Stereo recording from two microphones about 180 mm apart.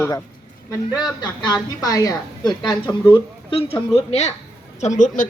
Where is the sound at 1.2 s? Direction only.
25° left (ahead or behind).